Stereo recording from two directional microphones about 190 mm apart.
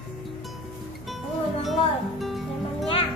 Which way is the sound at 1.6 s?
Centre (ahead or behind).